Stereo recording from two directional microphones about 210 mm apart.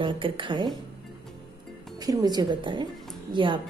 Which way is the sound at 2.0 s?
20° right (ahead or behind).